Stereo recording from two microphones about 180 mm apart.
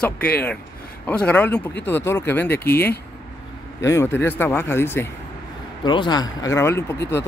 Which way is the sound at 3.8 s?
15° left (ahead or behind).